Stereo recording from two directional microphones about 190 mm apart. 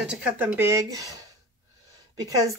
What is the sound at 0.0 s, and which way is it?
Speech, 5° right (ahead or behind).